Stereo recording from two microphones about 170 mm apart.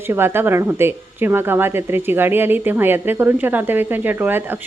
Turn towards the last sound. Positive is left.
turn(degrees=-10)  # may be behind; listen again after turning